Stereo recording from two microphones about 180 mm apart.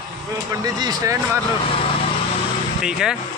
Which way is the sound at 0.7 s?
20° right (ahead or behind).